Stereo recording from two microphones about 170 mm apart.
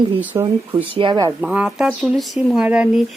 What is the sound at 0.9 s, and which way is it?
Speech, 25° right (ahead or behind).